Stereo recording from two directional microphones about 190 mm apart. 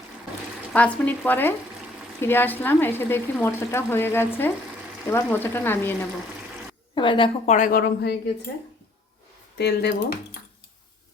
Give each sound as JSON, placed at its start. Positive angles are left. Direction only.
{"t": 0.7, "sound": "speech", "side_deg": 5}
{"t": 6.9, "sound": "a woman's voice", "side_deg": 25}
{"t": 7.5, "sound": "speech", "side_deg": 45}
{"t": 9.6, "sound": "speech", "side_deg": 60}